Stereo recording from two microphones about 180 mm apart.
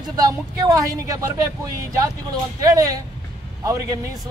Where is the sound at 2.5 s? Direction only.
20° right (ahead or behind).